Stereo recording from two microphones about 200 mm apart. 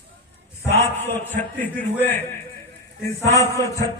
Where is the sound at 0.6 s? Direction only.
10° left (ahead or behind).